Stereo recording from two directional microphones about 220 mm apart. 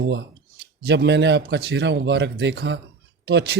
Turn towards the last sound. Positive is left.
turn(degrees=-50)  # may be behind; listen again after turning